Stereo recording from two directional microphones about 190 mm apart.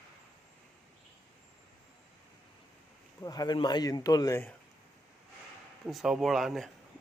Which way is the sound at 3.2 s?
20° left (ahead or behind).